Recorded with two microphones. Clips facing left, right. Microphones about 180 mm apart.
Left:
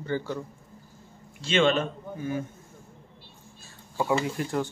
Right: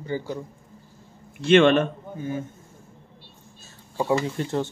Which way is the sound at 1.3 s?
60° right (ahead or behind).